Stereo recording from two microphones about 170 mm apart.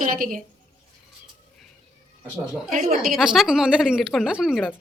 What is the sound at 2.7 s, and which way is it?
Speech, 40° right (ahead or behind).